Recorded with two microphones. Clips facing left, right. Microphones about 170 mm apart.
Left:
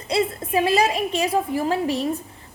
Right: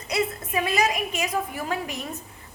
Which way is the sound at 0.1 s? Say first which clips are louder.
Left 5 dB; 30° left (ahead or behind).